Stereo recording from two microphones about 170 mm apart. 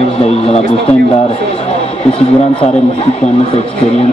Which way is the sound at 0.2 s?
35° left (ahead or behind).